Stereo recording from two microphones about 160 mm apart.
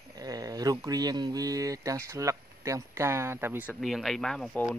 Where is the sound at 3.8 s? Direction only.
Centre (ahead or behind).